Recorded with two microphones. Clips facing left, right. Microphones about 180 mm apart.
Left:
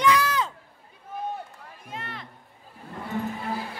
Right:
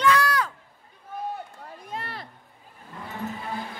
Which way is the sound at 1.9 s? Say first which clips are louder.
Right 2 dB; 35° right (ahead or behind).